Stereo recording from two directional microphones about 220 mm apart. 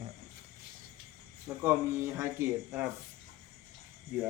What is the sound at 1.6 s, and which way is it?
Speech, 10° right (ahead or behind).